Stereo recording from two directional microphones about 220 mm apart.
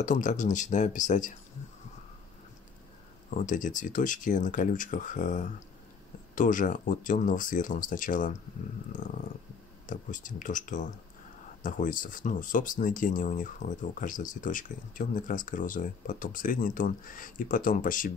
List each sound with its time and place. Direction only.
0.0 s speech: 35° left (ahead or behind)
3.3 s speech: 35° left (ahead or behind)
8.9 s purr: 35° left (ahead or behind)
9.8 s speech: 35° left (ahead or behind)